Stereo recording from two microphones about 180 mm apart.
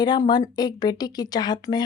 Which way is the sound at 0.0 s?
25° left (ahead or behind).